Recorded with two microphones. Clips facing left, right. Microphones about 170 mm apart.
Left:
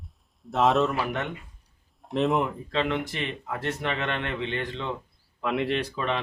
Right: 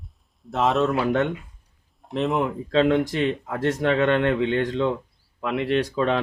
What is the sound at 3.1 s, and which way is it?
Speech, 90° right.